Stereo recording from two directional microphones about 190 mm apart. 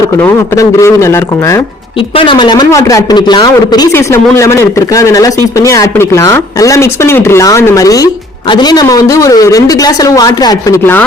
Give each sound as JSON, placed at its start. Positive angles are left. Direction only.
{"t": 0.2, "sound": "a man's voice", "side_deg": 15}
{"t": 2.0, "sound": "a man's voice", "side_deg": 30}